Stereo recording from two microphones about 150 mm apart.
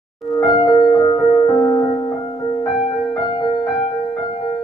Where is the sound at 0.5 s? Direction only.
30° left (ahead or behind).